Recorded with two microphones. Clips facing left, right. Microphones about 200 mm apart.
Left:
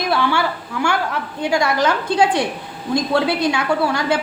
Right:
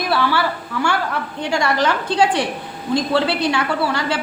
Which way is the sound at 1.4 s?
10° left (ahead or behind).